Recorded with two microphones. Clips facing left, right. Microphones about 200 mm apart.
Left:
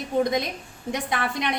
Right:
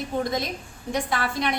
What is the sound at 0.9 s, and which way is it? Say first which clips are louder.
Speech: right 1 dB; 20° left (ahead or behind).